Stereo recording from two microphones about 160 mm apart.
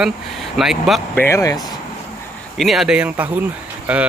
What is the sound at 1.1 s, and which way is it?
Speech, 15° left (ahead or behind).